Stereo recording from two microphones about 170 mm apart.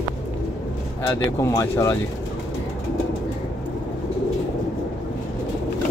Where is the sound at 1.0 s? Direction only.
15° left (ahead or behind).